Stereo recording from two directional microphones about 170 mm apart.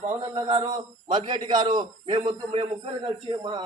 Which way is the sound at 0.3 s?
25° right (ahead or behind).